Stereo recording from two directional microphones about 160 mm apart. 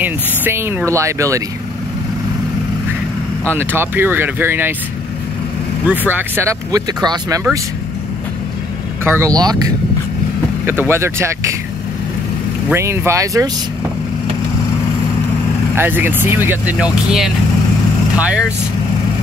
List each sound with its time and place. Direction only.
0.0 s speech: 15° right (ahead or behind)
3.4 s speech: 15° right (ahead or behind)
5.9 s speech: 10° right (ahead or behind)
9.0 s speech: 15° right (ahead or behind)
10.6 s speech: 15° right (ahead or behind)
12.6 s speech: 15° right (ahead or behind)
15.7 s speech: 15° right (ahead or behind)